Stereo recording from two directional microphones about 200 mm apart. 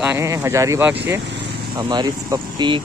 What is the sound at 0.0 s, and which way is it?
Speech, 15° right (ahead or behind).